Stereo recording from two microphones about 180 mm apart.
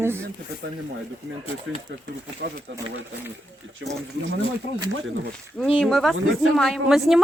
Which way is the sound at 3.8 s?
90° right.